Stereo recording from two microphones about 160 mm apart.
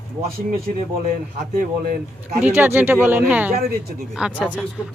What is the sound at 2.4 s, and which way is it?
A woman's voice, 15° right (ahead or behind).